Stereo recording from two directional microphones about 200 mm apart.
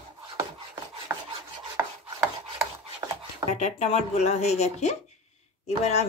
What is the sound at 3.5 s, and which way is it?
Speech, 35° left (ahead or behind).